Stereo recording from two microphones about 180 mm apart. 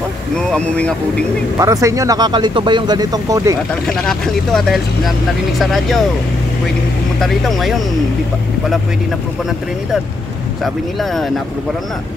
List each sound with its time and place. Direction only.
0.5 s speech: 5° left (ahead or behind)
1.6 s speech: 20° right (ahead or behind)
4.0 s speech: centre (ahead or behind)
7.2 s speech: centre (ahead or behind)
10.6 s speech: centre (ahead or behind)